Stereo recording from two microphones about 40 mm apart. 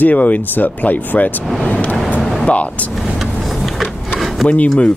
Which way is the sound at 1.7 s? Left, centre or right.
Left.